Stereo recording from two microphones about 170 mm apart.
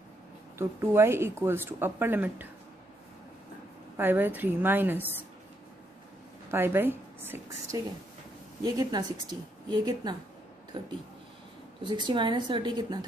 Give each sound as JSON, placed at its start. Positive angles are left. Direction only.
{"t": 0.6, "sound": "speech", "side_deg": -15}
{"t": 3.9, "sound": "speech", "side_deg": -10}
{"t": 6.5, "sound": "a woman's voice", "side_deg": -15}
{"t": 11.8, "sound": "a woman's voice", "side_deg": -25}